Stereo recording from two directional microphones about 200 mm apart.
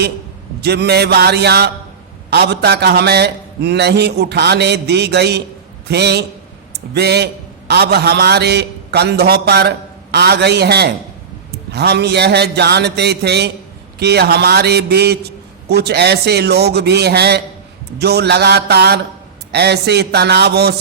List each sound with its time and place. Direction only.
0.6 s a man's voice: 55° right (ahead or behind)